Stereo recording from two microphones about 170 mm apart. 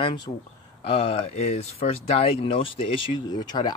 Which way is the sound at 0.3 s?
30° left (ahead or behind).